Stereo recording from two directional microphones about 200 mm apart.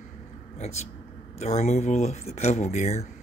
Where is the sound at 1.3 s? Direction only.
35° left (ahead or behind).